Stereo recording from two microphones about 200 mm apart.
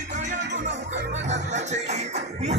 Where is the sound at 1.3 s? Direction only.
35° right (ahead or behind).